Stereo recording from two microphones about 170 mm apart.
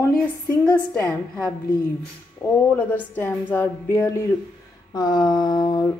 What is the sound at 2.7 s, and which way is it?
Speech, 10° left (ahead or behind).